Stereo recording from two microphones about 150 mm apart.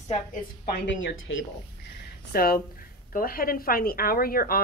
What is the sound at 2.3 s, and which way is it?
Speech, 75° left (ahead or behind).